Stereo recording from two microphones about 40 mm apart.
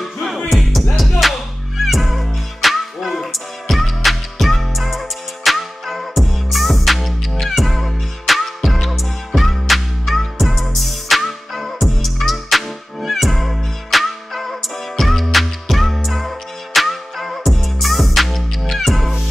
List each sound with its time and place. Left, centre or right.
0.0 s music: centre